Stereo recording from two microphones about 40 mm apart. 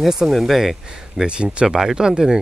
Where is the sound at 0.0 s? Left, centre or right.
Centre.